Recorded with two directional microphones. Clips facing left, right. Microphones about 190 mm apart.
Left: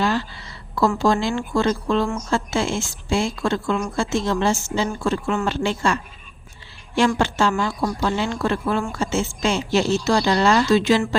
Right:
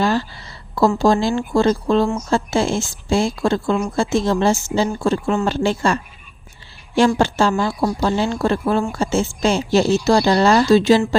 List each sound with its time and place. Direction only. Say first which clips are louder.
0.0 s a woman's voice: right 3 dB; 40° right (ahead or behind)
7.2 s a woman's voice: right 3 dB; 35° right (ahead or behind)